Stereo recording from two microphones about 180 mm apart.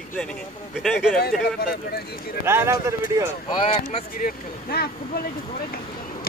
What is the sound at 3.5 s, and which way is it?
Speech, 25° left (ahead or behind).